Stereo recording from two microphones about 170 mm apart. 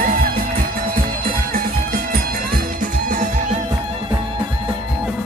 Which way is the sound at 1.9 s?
60° right (ahead or behind).